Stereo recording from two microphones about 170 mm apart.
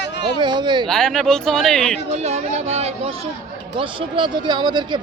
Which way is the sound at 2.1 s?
40° right (ahead or behind).